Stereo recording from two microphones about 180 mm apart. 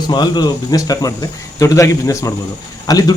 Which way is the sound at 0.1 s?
25° left (ahead or behind).